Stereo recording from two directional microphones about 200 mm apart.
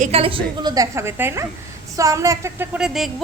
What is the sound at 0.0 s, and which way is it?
A woman's voice, 30° right (ahead or behind).